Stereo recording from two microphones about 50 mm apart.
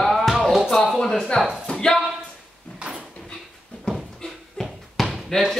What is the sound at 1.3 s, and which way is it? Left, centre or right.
Speech, centre.